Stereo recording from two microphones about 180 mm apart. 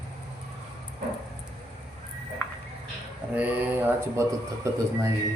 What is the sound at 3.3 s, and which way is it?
Speech, 10° right (ahead or behind).